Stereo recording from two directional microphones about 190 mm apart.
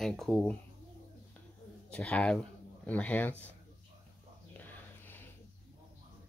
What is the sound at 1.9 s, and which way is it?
A man's voice, 5° left (ahead or behind).